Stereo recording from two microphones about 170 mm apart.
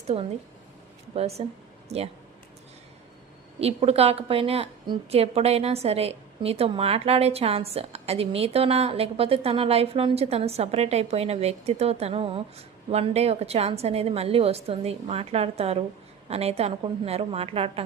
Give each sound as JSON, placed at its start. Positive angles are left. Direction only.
{"t": 1.1, "sound": "a woman's voice", "side_deg": -35}
{"t": 3.6, "sound": "a woman's voice", "side_deg": -35}